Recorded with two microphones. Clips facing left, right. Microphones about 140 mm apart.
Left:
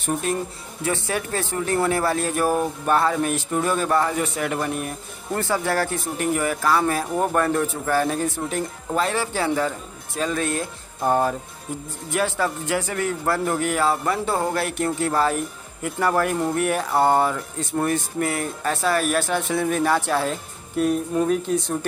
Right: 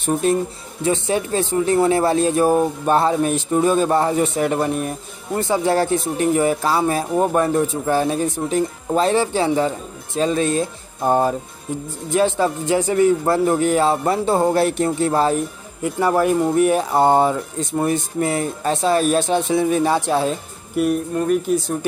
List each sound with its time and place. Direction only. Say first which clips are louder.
0.0 s speech: right 6 dB; 30° right (ahead or behind)
21.3 s speech: right 4 dB; 5° right (ahead or behind)